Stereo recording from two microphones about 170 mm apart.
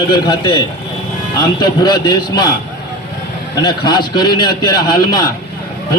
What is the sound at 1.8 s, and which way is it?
Speech, 25° left (ahead or behind).